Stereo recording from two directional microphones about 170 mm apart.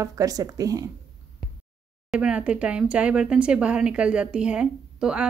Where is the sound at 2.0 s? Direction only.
5° right (ahead or behind).